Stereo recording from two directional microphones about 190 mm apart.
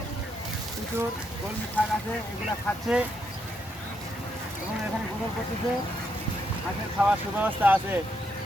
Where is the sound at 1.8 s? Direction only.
10° left (ahead or behind).